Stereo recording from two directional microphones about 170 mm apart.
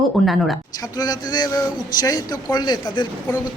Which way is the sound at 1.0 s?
25° left (ahead or behind).